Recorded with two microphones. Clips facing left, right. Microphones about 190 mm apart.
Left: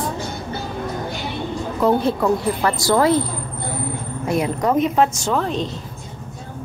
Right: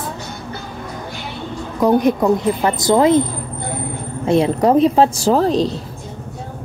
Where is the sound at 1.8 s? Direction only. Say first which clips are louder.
Right 4 dB; 15° right (ahead or behind); by 5.8 s 35° right (ahead or behind).